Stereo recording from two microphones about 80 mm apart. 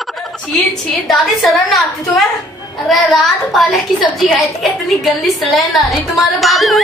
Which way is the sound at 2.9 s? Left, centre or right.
Centre.